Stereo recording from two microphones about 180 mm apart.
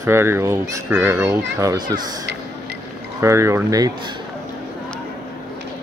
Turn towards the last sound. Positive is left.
turn(degrees=-20)  # may be behind; listen again after turning